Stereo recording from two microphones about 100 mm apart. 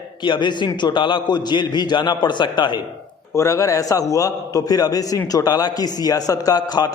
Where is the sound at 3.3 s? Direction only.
30° left (ahead or behind).